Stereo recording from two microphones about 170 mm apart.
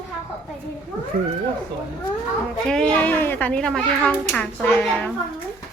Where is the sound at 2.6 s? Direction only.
5° left (ahead or behind).